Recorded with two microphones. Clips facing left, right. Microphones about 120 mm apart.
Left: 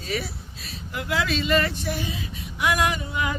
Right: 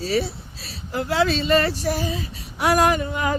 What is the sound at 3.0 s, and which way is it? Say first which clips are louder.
Music: right 5 dB; 40° right (ahead or behind).